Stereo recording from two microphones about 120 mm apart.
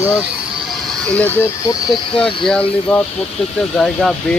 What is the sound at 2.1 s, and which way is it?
Speech, 45° left (ahead or behind).